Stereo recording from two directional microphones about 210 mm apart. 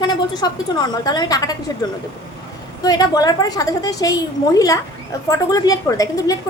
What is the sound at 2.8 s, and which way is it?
A woman's voice, 20° left (ahead or behind).